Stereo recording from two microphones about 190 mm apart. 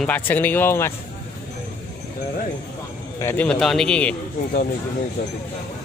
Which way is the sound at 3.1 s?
10° left (ahead or behind).